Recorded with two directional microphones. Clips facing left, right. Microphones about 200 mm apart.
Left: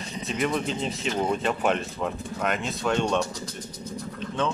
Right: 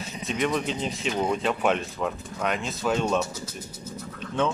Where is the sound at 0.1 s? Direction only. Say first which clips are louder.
Even; centre (ahead or behind).